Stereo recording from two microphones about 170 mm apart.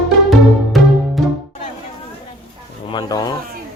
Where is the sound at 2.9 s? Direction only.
25° left (ahead or behind).